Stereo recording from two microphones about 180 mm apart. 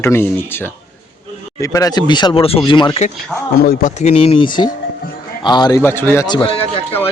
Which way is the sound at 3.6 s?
50° left (ahead or behind).